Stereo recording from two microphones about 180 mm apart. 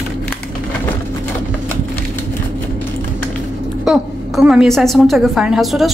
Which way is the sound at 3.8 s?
Centre (ahead or behind).